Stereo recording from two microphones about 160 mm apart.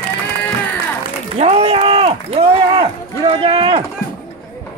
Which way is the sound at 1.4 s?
40° right (ahead or behind).